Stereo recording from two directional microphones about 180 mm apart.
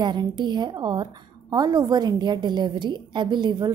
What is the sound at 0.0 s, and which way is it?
A woman's voice, 25° right (ahead or behind).